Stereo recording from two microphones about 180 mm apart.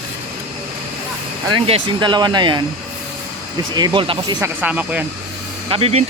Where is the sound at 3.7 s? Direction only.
25° right (ahead or behind).